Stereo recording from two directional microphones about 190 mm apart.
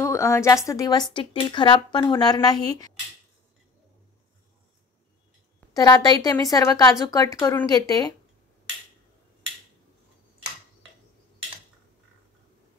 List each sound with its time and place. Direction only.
0.0 s a woman's voice: 15° left (ahead or behind)
5.6 s a woman's voice: 20° left (ahead or behind)